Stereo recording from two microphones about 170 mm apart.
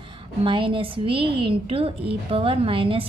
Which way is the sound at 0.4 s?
30° right (ahead or behind).